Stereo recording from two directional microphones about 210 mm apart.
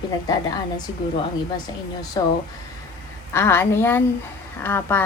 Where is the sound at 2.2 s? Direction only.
20° left (ahead or behind).